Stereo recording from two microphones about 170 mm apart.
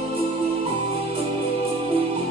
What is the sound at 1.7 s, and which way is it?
Music, 35° right (ahead or behind).